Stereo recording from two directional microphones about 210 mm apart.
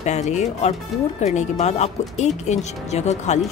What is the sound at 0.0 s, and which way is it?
Speech, 35° left (ahead or behind).